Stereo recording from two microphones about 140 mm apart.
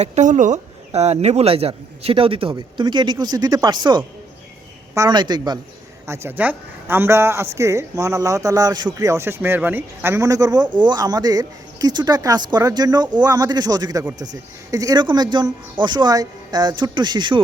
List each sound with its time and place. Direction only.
0.0 s speech: 60° right (ahead or behind); by 5.5 s 30° right (ahead or behind)
6.1 s a woman's voice: 15° right (ahead or behind); by 17.4 s 35° right (ahead or behind)